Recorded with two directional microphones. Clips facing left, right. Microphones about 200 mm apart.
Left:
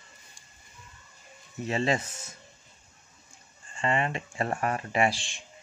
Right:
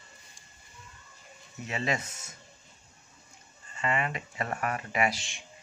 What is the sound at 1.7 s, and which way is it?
Speech, 30° left (ahead or behind).